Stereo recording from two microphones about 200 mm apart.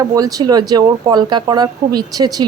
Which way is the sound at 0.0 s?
20° right (ahead or behind).